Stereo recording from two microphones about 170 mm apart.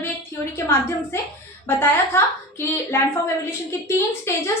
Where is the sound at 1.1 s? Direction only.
15° left (ahead or behind).